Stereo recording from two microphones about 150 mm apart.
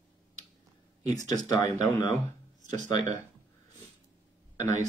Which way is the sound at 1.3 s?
25° left (ahead or behind).